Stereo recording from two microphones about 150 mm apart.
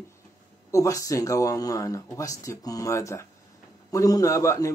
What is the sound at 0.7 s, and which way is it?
A man's voice, 20° left (ahead or behind).